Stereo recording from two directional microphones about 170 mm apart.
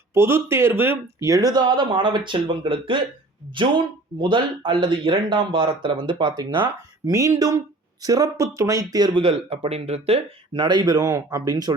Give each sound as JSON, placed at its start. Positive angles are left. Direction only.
{"t": 0.1, "sound": "speech", "side_deg": -15}